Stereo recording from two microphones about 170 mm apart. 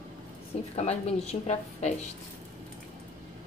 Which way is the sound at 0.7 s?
40° left (ahead or behind).